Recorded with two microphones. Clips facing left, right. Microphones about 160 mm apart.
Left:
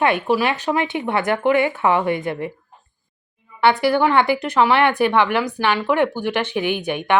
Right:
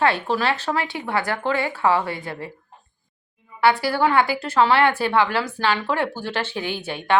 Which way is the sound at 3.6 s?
20° left (ahead or behind).